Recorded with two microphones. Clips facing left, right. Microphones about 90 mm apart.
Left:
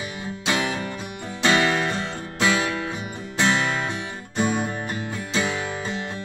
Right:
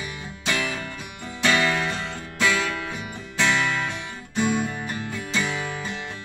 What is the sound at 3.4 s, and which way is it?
Music, 35° left (ahead or behind).